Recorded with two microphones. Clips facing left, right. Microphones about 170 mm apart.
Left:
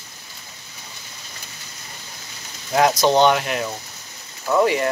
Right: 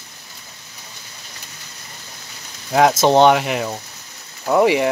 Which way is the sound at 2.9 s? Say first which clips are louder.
Right 4 dB; 25° right (ahead or behind).